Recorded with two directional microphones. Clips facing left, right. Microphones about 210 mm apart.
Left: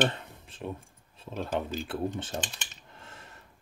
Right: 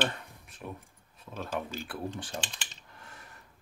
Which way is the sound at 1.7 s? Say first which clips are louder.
Left 5 dB; 20° left (ahead or behind).